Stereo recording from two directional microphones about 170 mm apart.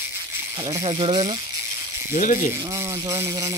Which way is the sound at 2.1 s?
50° left (ahead or behind).